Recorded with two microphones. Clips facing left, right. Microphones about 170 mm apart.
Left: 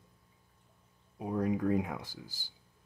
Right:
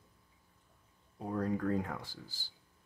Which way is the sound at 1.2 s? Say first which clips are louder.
Left 3 dB; 10° left (ahead or behind).